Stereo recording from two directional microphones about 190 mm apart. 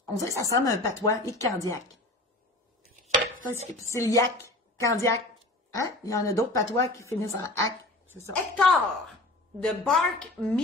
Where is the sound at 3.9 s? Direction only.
15° left (ahead or behind).